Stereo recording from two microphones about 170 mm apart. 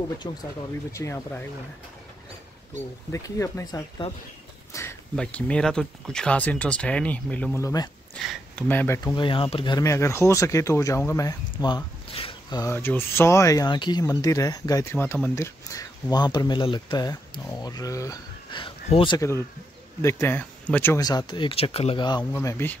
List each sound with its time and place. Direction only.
0.2 s speech: 25° left (ahead or behind)
3.1 s speech: 20° left (ahead or behind)
4.0 s speech: 35° left (ahead or behind)
4.7 s speech: 20° left (ahead or behind)
5.1 s speech: 5° left (ahead or behind)
7.6 s speech: 20° left (ahead or behind)
8.3 s speech: 10° left (ahead or behind)
9.1 s speech: 30° left (ahead or behind)
12.7 s speech: 10° left (ahead or behind); by 19.1 s 35° left (ahead or behind)
19.1 s speech: 15° left (ahead or behind)
22.2 s speech: 15° left (ahead or behind)